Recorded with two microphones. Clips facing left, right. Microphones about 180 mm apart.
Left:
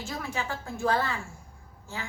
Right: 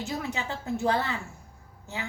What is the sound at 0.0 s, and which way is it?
A woman's voice, 20° right (ahead or behind).